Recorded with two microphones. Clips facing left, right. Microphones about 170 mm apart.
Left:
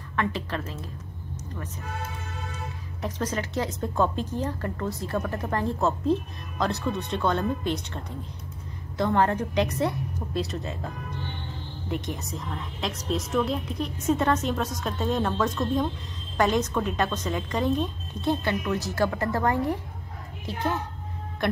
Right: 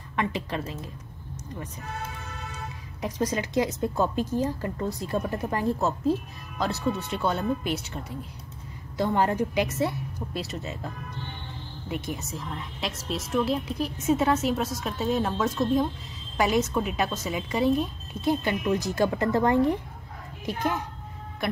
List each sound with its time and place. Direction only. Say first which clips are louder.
0.1 s a woman's voice: even; 15° right (ahead or behind)
3.0 s a woman's voice: right 2 dB; 15° right (ahead or behind)
11.9 s a woman's voice: left 1 dB; 5° right (ahead or behind)